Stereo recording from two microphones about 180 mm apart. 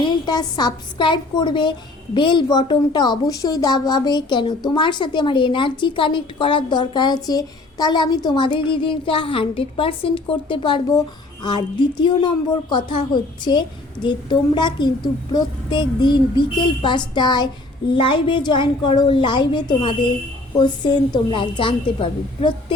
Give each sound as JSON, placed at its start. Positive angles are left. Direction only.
{"t": 0.0, "sound": "a woman's voice", "side_deg": 25}